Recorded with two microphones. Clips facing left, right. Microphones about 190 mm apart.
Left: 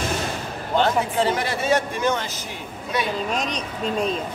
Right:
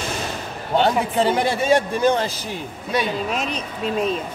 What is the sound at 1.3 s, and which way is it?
Speech, 35° right (ahead or behind).